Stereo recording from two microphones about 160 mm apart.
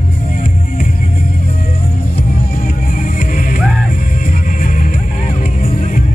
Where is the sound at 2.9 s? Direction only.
55° left (ahead or behind).